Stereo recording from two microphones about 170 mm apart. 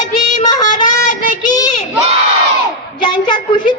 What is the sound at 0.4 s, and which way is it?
Music, 20° left (ahead or behind).